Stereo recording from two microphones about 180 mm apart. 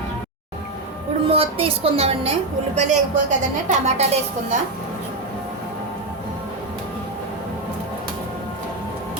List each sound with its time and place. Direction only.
1.2 s a woman's voice: 30° right (ahead or behind)